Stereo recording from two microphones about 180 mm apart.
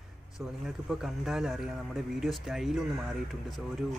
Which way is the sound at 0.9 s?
5° right (ahead or behind).